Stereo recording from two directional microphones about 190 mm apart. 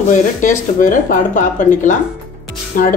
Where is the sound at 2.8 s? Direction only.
45° left (ahead or behind).